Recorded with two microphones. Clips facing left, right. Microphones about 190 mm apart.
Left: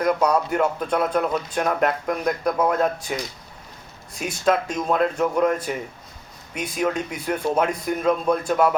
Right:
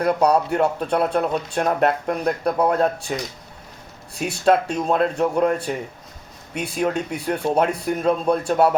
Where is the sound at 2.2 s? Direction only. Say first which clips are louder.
Right 2 dB; 30° right (ahead or behind).